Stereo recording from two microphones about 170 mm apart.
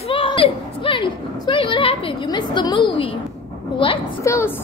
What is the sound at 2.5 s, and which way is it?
Speech, 25° left (ahead or behind).